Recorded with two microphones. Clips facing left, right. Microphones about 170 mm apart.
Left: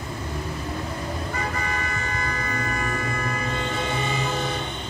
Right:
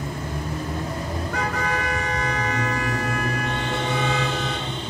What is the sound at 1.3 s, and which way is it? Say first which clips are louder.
Toot: right 5 dB; 75° right (ahead or behind).